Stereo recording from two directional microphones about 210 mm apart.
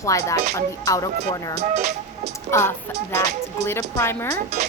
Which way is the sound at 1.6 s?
35° right (ahead or behind).